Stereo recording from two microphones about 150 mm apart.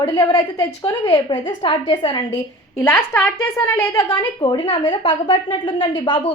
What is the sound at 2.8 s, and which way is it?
A woman's voice, 15° left (ahead or behind).